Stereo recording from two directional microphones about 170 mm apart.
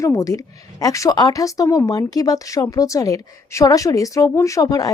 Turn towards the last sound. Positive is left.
turn(degrees=20)  # may be behind; listen again after turning